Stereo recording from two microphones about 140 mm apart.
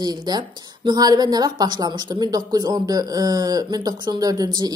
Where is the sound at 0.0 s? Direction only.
30° right (ahead or behind).